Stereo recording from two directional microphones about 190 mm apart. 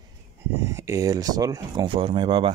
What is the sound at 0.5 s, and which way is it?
Speech, 15° right (ahead or behind).